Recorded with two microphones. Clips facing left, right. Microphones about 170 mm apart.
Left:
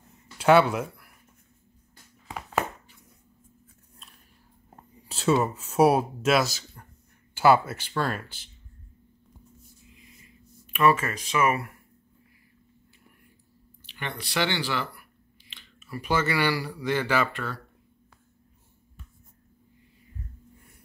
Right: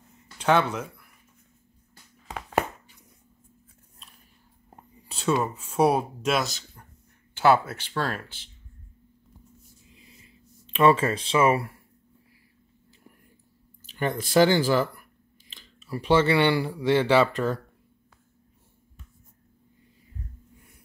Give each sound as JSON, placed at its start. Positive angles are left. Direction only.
{"t": 0.4, "sound": "speech", "side_deg": 10}
{"t": 5.0, "sound": "a sound", "side_deg": 0}
{"t": 5.4, "sound": "speech", "side_deg": 5}
{"t": 9.9, "sound": "a sound", "side_deg": -30}
{"t": 13.8, "sound": "speech", "side_deg": -40}
{"t": 15.5, "sound": "speech", "side_deg": -30}
{"t": 17.3, "sound": "speech", "side_deg": -40}